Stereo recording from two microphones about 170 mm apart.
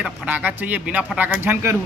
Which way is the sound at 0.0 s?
10° right (ahead or behind).